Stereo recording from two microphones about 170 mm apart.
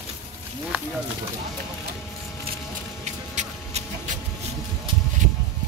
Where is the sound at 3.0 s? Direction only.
45° right (ahead or behind).